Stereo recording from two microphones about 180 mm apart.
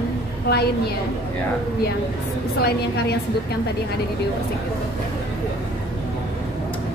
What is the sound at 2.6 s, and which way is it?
Speech, 65° left (ahead or behind).